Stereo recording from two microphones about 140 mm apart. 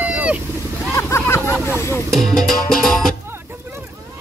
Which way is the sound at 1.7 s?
20° left (ahead or behind).